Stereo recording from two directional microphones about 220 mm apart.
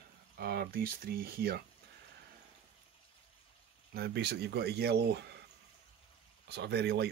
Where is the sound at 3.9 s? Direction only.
45° right (ahead or behind).